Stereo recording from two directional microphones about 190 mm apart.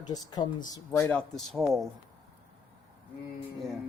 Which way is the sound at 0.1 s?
20° left (ahead or behind).